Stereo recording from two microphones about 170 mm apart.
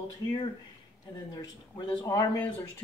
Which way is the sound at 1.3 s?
25° left (ahead or behind).